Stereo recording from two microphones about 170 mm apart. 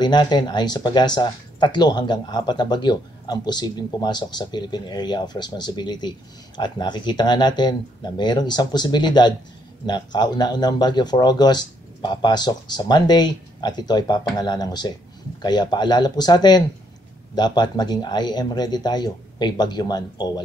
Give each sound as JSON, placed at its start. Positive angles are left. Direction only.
{"t": 0.0, "sound": "speech", "side_deg": 25}